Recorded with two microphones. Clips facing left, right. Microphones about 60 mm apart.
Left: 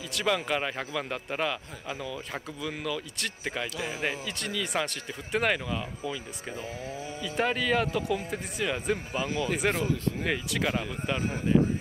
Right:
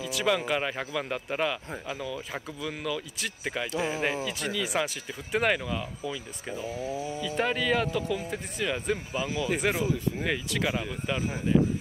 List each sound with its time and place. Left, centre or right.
0.0 s speech: centre
3.7 s speech: right
4.3 s speech: centre
6.5 s speech: left
7.2 s speech: centre